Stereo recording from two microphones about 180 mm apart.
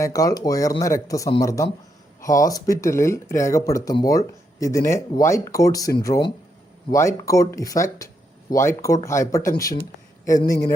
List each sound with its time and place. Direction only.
0.0 s speech: 20° left (ahead or behind)